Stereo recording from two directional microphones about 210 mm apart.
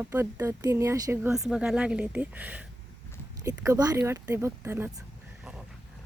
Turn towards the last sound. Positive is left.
turn(degrees=-10)  # may be behind; listen again after turning